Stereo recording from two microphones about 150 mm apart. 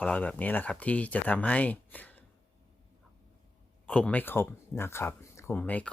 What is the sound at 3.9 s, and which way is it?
Speech, 5° left (ahead or behind).